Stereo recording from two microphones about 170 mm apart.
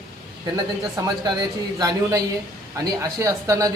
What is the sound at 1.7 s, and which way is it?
Speech, 20° right (ahead or behind).